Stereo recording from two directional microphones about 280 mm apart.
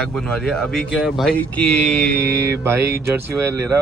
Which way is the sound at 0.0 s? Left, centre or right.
Centre.